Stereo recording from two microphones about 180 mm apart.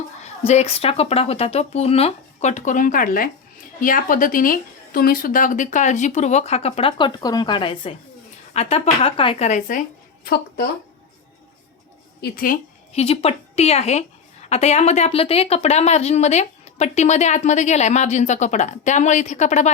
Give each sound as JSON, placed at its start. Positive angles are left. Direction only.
{"t": 0.4, "sound": "a woman's voice", "side_deg": 35}
{"t": 12.2, "sound": "a woman's voice", "side_deg": 50}
{"t": 12.9, "sound": "a woman's voice", "side_deg": 35}